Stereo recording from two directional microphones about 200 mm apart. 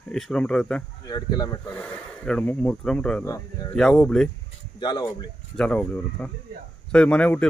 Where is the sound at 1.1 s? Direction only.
20° left (ahead or behind).